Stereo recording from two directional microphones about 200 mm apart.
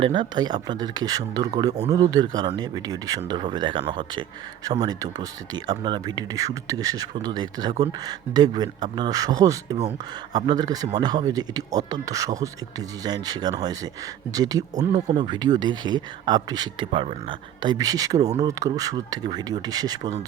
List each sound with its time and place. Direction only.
0.0 s speech: 25° right (ahead or behind)